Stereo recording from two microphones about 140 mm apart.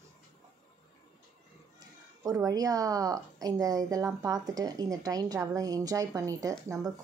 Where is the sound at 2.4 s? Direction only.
25° right (ahead or behind).